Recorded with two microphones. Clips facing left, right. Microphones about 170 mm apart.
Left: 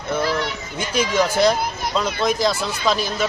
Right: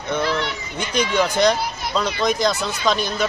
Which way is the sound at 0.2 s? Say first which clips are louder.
Left 1 dB; 40° left (ahead or behind).